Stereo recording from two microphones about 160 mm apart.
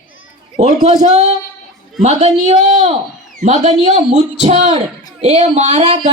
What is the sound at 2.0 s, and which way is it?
A man's voice, 45° right (ahead or behind).